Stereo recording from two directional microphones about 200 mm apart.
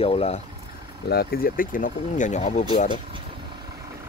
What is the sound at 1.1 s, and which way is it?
Speech, 50° left (ahead or behind).